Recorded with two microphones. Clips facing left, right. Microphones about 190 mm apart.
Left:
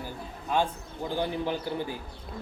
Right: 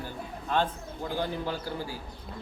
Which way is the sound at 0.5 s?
10° left (ahead or behind).